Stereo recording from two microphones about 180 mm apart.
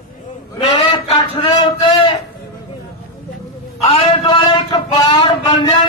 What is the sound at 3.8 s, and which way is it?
A man's voice, 30° left (ahead or behind).